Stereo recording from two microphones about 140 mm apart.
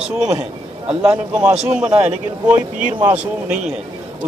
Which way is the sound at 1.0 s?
10° right (ahead or behind).